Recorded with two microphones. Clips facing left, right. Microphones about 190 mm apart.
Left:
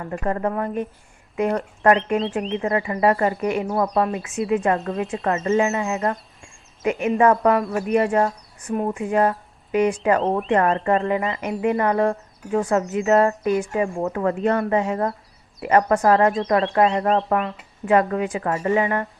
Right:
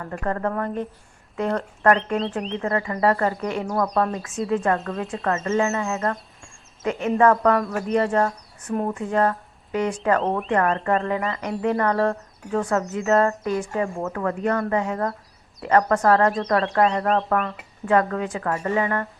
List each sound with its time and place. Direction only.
0.0 s speech: 15° left (ahead or behind)
7.2 s speech: 15° left (ahead or behind)
10.2 s speech: 25° left (ahead or behind)